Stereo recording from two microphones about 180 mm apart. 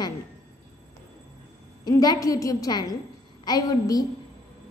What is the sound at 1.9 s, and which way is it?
A woman's voice, 20° left (ahead or behind).